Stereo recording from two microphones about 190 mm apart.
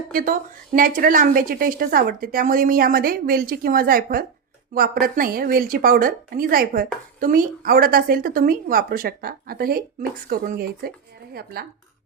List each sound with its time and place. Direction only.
0.1 s a woman's voice: 45° right (ahead or behind)